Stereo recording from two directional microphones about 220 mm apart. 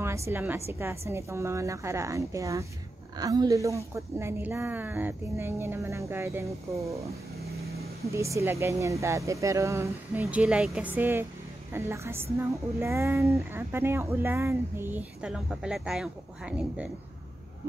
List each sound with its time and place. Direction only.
0.0 s a woman's voice: 10° right (ahead or behind)
8.1 s speech: 15° right (ahead or behind)